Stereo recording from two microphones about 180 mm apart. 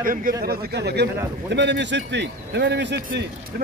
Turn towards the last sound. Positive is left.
turn(degrees=-75)  # may be behind; listen again after turning